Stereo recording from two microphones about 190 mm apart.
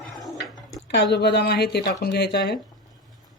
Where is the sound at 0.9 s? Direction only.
60° left (ahead or behind).